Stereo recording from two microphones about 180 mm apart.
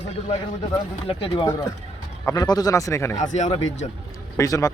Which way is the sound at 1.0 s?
30° left (ahead or behind).